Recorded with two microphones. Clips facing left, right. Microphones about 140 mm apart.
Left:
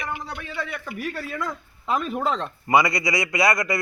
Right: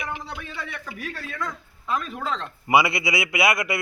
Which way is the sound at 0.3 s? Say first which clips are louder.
Left 3 dB; centre (ahead or behind).